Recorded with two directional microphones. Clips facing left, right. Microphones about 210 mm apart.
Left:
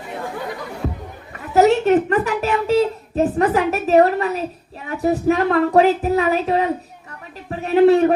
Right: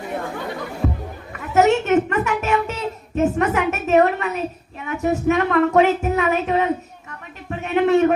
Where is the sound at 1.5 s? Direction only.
35° left (ahead or behind).